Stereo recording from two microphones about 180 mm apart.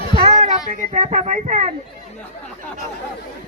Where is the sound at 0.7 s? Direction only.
40° right (ahead or behind).